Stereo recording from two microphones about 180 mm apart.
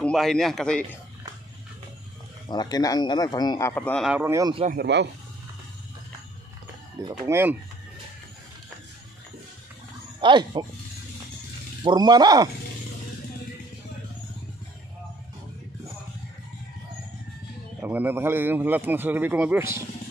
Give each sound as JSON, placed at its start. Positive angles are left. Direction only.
{"t": 0.0, "sound": "a man's voice", "side_deg": 0}
{"t": 2.4, "sound": "speech", "side_deg": 20}
{"t": 4.0, "sound": "a man's voice", "side_deg": -10}
{"t": 4.7, "sound": "speech", "side_deg": -75}
{"t": 7.2, "sound": "a man's voice", "side_deg": -15}
{"t": 10.2, "sound": "speech", "side_deg": -25}
{"t": 11.8, "sound": "speech", "side_deg": -25}
{"t": 17.8, "sound": "a man's voice", "side_deg": -10}